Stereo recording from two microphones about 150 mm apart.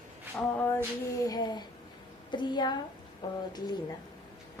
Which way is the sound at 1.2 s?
25° left (ahead or behind).